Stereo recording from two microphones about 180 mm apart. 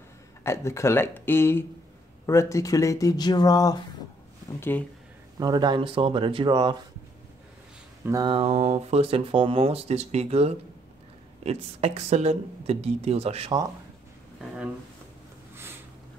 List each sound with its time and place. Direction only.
0.4 s speech: 15° left (ahead or behind)
5.4 s speech: 25° right (ahead or behind)
8.0 s speech: 15° right (ahead or behind)
8.3 s speech: 35° right (ahead or behind)